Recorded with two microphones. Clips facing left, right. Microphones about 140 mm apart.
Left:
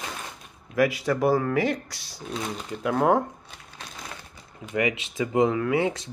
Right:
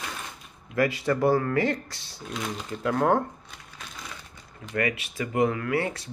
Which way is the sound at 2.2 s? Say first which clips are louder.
Left 1 dB; 30° left (ahead or behind).